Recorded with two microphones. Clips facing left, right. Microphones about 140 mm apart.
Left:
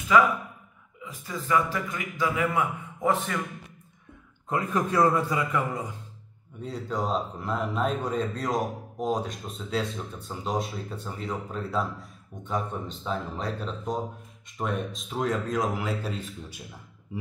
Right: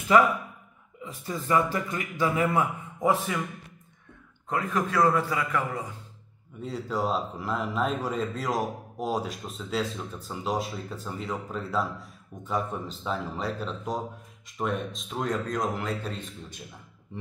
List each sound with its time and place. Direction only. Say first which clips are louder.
1.0 s a man's voice: right 2 dB; 30° right (ahead or behind)
3.0 s speech: right 1 dB; 10° right (ahead or behind)
4.5 s a man's voice: left 1 dB; 20° left (ahead or behind)
6.6 s speech: right 1 dB; centre (ahead or behind)